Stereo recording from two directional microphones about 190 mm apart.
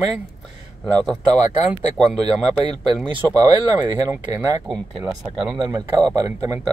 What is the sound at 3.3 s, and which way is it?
Speech, 20° right (ahead or behind).